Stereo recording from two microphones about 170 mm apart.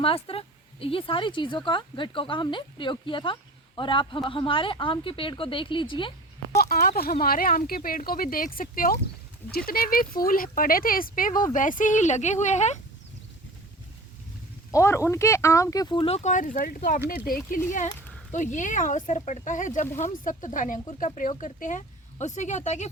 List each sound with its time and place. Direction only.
0.0 s speech: 35° left (ahead or behind)
6.6 s speech: 65° left (ahead or behind); by 12.8 s 45° left (ahead or behind)
14.7 s speech: 15° left (ahead or behind); by 22.9 s 45° left (ahead or behind)